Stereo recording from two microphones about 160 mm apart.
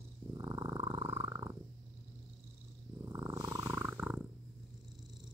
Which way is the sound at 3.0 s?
20° right (ahead or behind).